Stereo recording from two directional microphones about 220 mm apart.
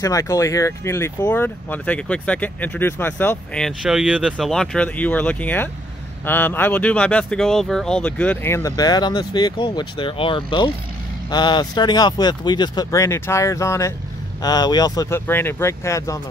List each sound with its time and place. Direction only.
0.0 s speech: 15° left (ahead or behind)